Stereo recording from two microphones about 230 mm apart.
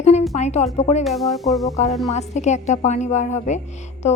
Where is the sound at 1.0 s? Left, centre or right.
Centre.